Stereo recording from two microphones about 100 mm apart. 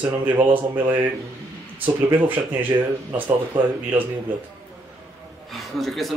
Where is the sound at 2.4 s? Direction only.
15° right (ahead or behind).